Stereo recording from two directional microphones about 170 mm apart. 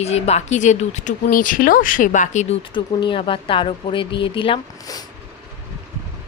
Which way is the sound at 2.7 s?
30° left (ahead or behind).